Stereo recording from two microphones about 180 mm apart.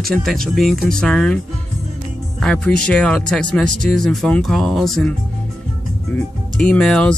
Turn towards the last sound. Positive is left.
turn(degrees=5)  # may be behind; listen again after turning